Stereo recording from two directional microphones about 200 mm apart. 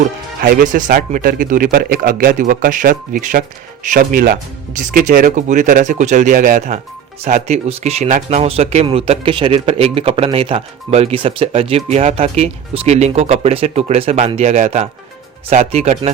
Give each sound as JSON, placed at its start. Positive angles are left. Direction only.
{"t": 0.4, "sound": "a man's voice", "side_deg": -45}